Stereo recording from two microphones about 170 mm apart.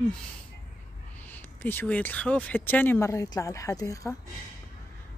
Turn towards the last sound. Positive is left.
turn(degrees=20)  # may be behind; listen again after turning